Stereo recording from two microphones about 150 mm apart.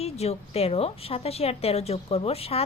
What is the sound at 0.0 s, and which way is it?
A woman's voice, 45° left (ahead or behind).